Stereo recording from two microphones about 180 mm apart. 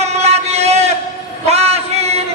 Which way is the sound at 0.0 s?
35° right (ahead or behind).